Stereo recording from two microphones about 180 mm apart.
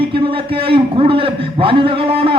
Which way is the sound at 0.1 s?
30° right (ahead or behind).